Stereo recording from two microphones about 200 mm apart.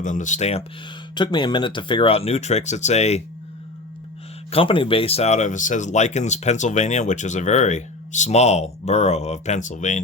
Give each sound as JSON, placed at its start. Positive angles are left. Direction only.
{"t": 0.0, "sound": "speech", "side_deg": 40}
{"t": 1.1, "sound": "speech", "side_deg": 20}
{"t": 4.5, "sound": "speech", "side_deg": 25}